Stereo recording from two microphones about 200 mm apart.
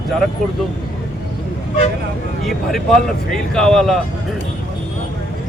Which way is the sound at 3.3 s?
5° left (ahead or behind).